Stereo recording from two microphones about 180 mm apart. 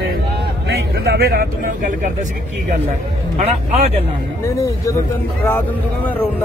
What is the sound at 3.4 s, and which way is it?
Speech, 35° right (ahead or behind).